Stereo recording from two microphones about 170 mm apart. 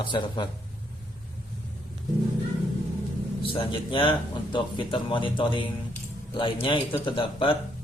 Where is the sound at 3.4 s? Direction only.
30° left (ahead or behind).